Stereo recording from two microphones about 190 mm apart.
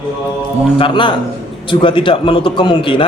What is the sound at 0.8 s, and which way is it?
A man's voice, 25° left (ahead or behind).